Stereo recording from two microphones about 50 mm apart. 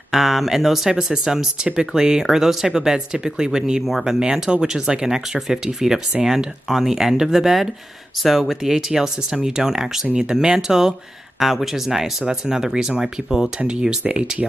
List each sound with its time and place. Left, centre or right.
0.1 s speech: centre
3.8 s speech: centre
13.6 s speech: centre